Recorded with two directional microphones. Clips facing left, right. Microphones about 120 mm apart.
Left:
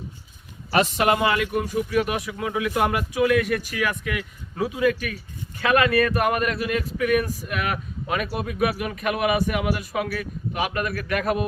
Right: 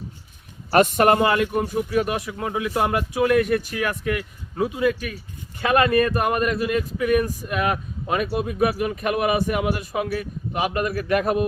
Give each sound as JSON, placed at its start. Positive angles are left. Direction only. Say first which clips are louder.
{"t": 0.7, "sound": "speech", "louder": "right 4 dB", "side_deg": -50}